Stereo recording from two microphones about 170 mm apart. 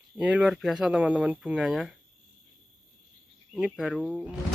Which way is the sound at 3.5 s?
5° right (ahead or behind).